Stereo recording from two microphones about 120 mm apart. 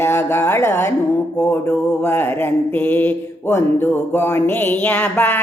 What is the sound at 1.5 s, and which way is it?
Mantra, 20° left (ahead or behind).